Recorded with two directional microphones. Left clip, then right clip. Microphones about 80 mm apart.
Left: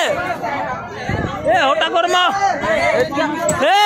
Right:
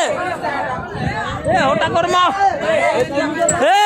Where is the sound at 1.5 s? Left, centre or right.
Centre.